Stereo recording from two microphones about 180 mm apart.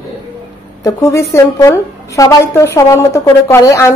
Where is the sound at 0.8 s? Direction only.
15° left (ahead or behind).